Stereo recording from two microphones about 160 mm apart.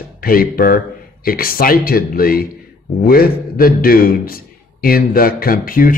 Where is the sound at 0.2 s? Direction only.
65° left (ahead or behind).